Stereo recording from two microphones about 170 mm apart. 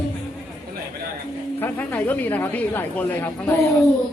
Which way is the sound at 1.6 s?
10° left (ahead or behind).